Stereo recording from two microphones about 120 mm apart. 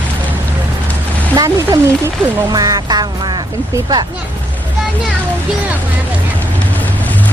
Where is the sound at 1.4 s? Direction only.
30° right (ahead or behind).